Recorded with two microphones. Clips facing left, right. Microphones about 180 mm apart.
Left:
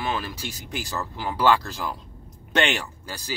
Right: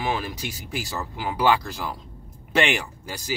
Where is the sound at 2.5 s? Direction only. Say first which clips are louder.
Right 1 dB; 10° right (ahead or behind).